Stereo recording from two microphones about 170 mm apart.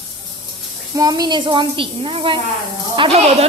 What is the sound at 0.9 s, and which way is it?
A woman's voice, 20° right (ahead or behind).